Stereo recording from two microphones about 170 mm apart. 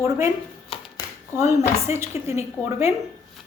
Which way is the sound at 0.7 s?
35° left (ahead or behind).